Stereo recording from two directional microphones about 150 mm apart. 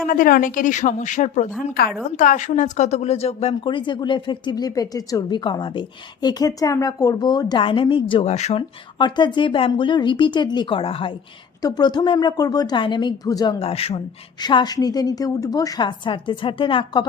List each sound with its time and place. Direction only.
0.1 s a woman's voice: 70° left (ahead or behind); by 8.3 s 35° left (ahead or behind)
8.3 s speech: 45° left (ahead or behind)
9.0 s a woman's voice: 30° left (ahead or behind)
14.4 s a woman's voice: 30° left (ahead or behind)